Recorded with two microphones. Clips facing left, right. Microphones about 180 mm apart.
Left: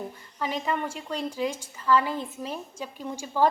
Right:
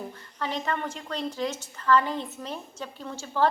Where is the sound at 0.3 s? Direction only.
10° left (ahead or behind).